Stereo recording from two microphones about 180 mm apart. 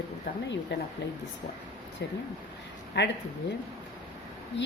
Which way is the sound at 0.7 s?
70° left (ahead or behind).